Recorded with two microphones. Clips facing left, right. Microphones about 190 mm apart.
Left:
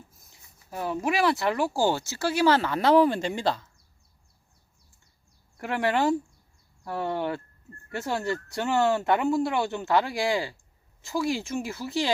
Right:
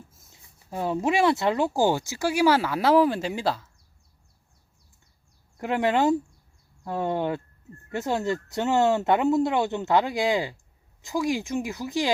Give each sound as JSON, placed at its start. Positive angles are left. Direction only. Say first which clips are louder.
{"t": 0.1, "sound": "speech", "louder": "right 1 dB", "side_deg": -25}
{"t": 5.5, "sound": "speech", "louder": "right 3 dB", "side_deg": -20}